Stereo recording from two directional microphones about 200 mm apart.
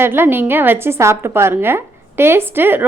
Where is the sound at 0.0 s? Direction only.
10° right (ahead or behind).